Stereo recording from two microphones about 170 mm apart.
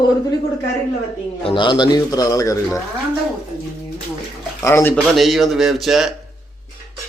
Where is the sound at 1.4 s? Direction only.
30° left (ahead or behind).